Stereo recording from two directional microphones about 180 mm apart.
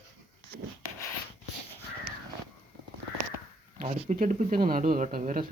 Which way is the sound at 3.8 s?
45° right (ahead or behind).